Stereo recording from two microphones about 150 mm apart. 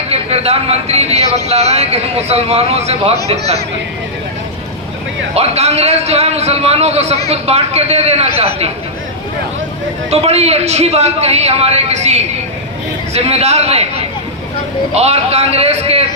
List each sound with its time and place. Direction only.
0.1 s a man's voice: 45° right (ahead or behind)
5.3 s a man's voice: 45° right (ahead or behind)
10.1 s a man's voice: 45° right (ahead or behind)